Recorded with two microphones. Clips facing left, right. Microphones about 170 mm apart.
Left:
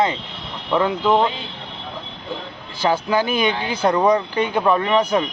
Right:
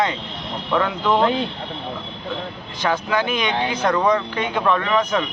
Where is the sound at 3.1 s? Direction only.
35° left (ahead or behind).